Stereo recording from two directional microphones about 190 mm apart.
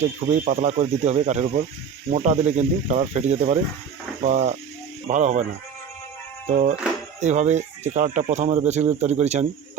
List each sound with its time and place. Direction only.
0.0 s speech: 35° right (ahead or behind)
6.5 s speech: 40° right (ahead or behind)